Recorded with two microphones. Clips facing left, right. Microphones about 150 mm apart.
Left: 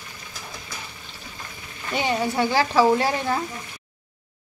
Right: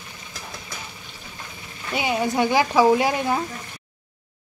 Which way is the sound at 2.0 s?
10° right (ahead or behind).